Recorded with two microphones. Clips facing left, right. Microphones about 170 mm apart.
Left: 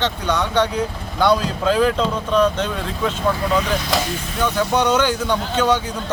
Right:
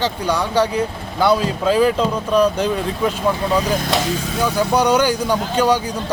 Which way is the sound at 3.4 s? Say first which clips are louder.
Right 2 dB; 35° right (ahead or behind).